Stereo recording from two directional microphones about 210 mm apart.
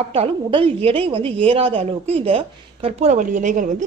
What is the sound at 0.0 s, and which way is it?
Speech, 30° right (ahead or behind).